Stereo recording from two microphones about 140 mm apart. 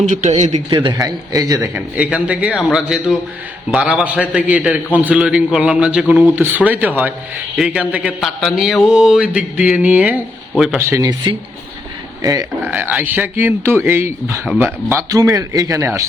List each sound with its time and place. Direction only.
0.0 s a man's voice: 60° right (ahead or behind)
0.9 s speech: 25° right (ahead or behind)
1.7 s mantra: 10° right (ahead or behind)
2.7 s a man's voice: 5° right (ahead or behind)
3.7 s mantra: 5° right (ahead or behind)
6.2 s mantra: 15° right (ahead or behind)
7.5 s a man's voice: 5° right (ahead or behind)
8.4 s mantra: centre (ahead or behind)
10.8 s speech: 20° right (ahead or behind)
12.2 s speech: 25° right (ahead or behind)
12.7 s mantra: 10° right (ahead or behind)
14.6 s speech: 20° right (ahead or behind)